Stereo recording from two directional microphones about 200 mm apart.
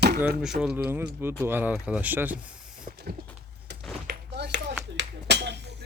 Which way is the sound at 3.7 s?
55° right (ahead or behind).